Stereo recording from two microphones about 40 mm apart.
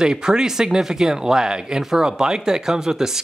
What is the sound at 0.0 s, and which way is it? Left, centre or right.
Speech, centre.